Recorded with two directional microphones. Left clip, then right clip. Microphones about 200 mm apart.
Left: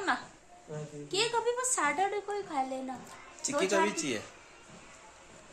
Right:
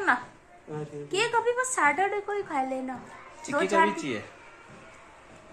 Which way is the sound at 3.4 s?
15° left (ahead or behind).